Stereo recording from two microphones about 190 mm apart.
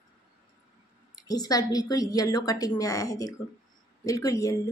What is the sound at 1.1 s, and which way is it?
A woman's voice, 20° left (ahead or behind).